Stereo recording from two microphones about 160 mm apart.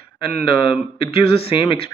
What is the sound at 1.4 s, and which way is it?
Speech, 30° left (ahead or behind).